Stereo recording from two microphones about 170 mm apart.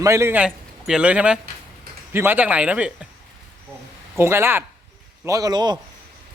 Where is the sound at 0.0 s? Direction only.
15° right (ahead or behind).